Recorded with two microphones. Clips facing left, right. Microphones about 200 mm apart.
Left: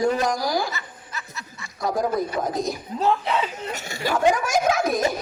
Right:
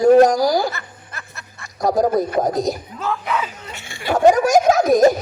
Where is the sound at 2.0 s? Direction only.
40° right (ahead or behind).